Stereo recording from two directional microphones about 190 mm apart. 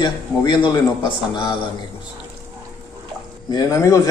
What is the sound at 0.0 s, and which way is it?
Speech, 25° left (ahead or behind).